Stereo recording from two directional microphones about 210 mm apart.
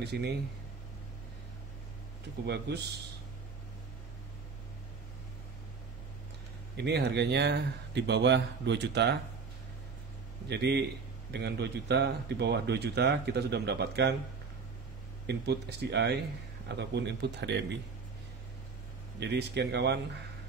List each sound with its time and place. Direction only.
0.0 s speech: 50° right (ahead or behind)
2.4 s speech: 55° right (ahead or behind)
6.8 s speech: 55° right (ahead or behind)
10.5 s speech: 50° right (ahead or behind)
15.2 s speech: 55° right (ahead or behind)
19.1 s speech: 55° right (ahead or behind)